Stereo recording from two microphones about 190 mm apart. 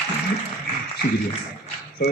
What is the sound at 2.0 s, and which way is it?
Speech, 55° left (ahead or behind).